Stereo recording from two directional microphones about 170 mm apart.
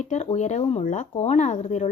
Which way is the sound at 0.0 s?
40° left (ahead or behind).